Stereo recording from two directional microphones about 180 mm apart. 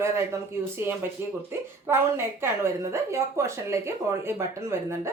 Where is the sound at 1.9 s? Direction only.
15° right (ahead or behind).